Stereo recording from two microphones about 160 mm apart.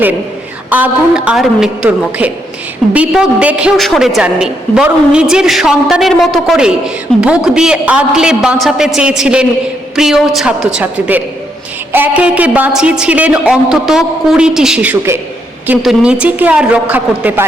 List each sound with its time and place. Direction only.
0.7 s a woman's voice: 10° right (ahead or behind)